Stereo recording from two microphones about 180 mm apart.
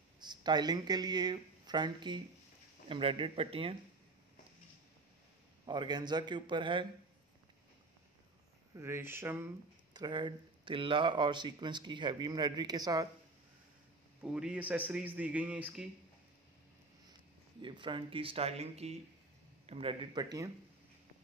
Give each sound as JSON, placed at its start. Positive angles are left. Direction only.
{"t": 0.2, "sound": "speech", "side_deg": -25}
{"t": 5.7, "sound": "speech", "side_deg": -25}
{"t": 8.7, "sound": "a man's voice", "side_deg": -15}
{"t": 9.9, "sound": "speech", "side_deg": -25}
{"t": 14.2, "sound": "a man's voice", "side_deg": -5}
{"t": 17.6, "sound": "speech", "side_deg": -25}